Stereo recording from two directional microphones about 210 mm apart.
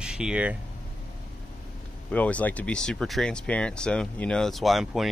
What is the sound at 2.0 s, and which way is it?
Speech, 5° left (ahead or behind).